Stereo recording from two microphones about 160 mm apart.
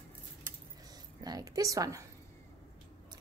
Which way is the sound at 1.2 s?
25° right (ahead or behind).